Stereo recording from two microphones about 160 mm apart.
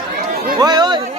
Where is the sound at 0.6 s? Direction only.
25° right (ahead or behind).